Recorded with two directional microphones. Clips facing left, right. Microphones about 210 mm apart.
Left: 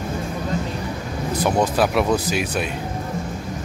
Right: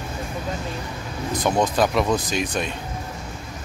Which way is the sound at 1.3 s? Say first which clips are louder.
Left 1 dB; 10° left (ahead or behind).